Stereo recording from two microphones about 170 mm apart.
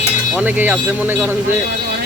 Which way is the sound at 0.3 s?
10° right (ahead or behind).